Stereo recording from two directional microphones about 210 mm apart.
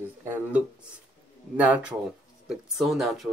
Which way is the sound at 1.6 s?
5° right (ahead or behind).